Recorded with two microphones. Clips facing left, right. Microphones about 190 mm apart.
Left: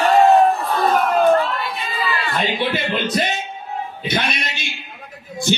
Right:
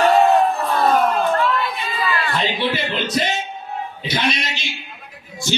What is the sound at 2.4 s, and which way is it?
Music, 55° left (ahead or behind).